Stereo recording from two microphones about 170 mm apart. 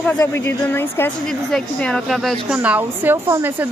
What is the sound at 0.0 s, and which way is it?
A woman's voice, 10° left (ahead or behind).